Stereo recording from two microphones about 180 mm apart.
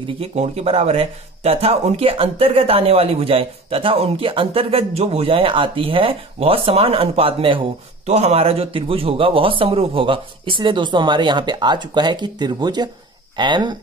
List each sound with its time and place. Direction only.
0.0 s a man's voice: 35° right (ahead or behind)